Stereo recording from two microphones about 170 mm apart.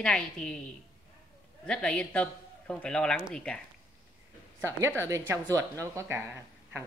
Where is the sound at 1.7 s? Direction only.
5° left (ahead or behind).